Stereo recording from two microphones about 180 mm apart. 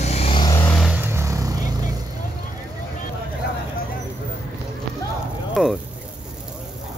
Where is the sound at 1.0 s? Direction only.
15° right (ahead or behind).